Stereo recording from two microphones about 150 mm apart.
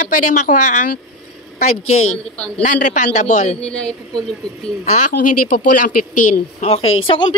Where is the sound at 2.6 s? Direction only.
55° left (ahead or behind).